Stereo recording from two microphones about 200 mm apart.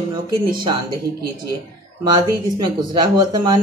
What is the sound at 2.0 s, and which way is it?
Speech, 20° right (ahead or behind).